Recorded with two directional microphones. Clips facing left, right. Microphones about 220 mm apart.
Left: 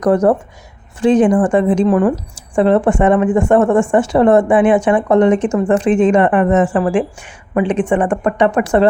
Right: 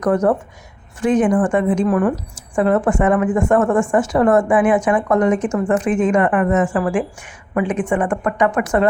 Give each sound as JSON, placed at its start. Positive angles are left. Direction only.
{"t": 0.0, "sound": "speech", "side_deg": 35}